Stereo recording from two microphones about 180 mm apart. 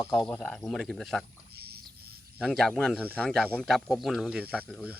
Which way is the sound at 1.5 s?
60° right (ahead or behind).